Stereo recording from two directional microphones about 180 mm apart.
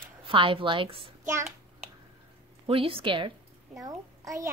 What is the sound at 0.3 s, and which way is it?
Speech, 30° right (ahead or behind).